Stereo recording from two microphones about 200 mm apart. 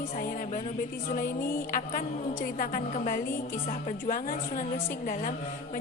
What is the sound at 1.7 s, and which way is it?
A woman's voice, 45° left (ahead or behind).